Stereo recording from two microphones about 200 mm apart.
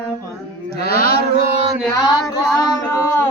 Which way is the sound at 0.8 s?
45° left (ahead or behind).